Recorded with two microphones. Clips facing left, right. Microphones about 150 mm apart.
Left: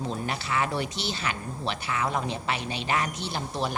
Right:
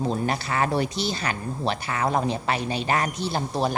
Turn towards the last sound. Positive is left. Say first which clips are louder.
# right 5 dB
turn(degrees=-40)  # may be behind; listen again after turning